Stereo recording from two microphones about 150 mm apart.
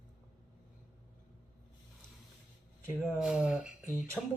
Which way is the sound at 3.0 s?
5° right (ahead or behind).